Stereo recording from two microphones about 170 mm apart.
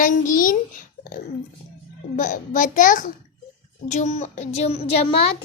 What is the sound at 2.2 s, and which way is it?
A child's voice, 50° left (ahead or behind).